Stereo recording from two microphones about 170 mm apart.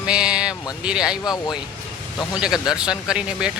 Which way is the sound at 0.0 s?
5° right (ahead or behind).